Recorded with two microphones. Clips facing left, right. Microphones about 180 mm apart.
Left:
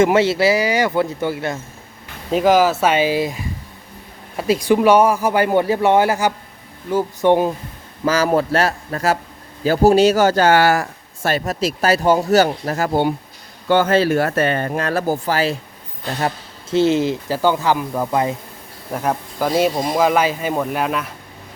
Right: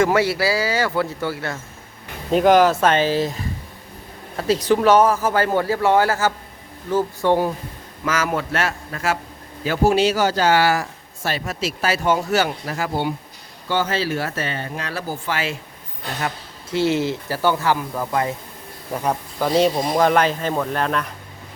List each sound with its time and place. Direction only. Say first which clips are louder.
0.0 s speech: left 4 dB; 25° left (ahead or behind)
2.3 s speech: even; 5° left (ahead or behind); by 7.5 s 20° left (ahead or behind)
8.0 s speech: left 6 dB; 35° left (ahead or behind)
16.6 s speech: left 4 dB; 20° left (ahead or behind)
18.9 s speech: left 2 dB; 5° left (ahead or behind)